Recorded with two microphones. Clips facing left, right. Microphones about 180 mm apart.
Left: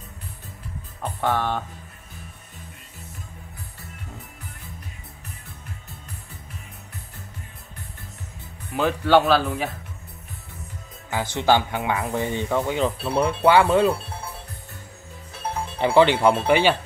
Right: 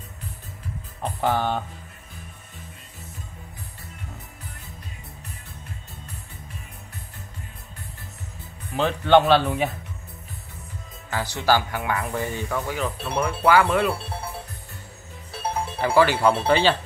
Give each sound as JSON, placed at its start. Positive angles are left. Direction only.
{"t": 1.2, "sound": "speech", "side_deg": 0}
{"t": 8.7, "sound": "speech", "side_deg": 5}
{"t": 11.1, "sound": "speech", "side_deg": 20}
{"t": 15.8, "sound": "speech", "side_deg": 20}